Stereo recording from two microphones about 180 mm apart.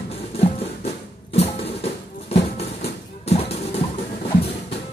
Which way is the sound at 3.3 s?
35° left (ahead or behind).